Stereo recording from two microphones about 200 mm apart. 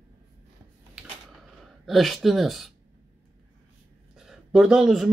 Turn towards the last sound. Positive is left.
turn(degrees=0)  # may be behind; listen again after turning